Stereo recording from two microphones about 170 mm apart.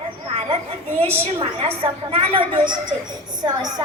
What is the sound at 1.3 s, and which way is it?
A woman's voice, 35° right (ahead or behind).